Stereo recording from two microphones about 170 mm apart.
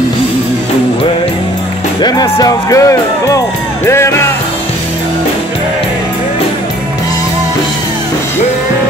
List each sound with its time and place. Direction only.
2.0 s speech: 25° left (ahead or behind)